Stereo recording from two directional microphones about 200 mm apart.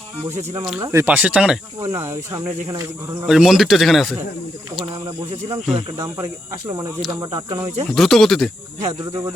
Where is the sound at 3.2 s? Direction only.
Centre (ahead or behind).